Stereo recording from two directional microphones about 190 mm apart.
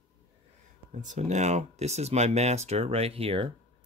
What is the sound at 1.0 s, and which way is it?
Speech, 40° right (ahead or behind).